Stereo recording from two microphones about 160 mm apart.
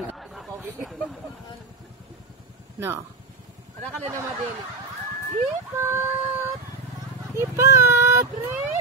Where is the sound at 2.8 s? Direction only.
15° right (ahead or behind).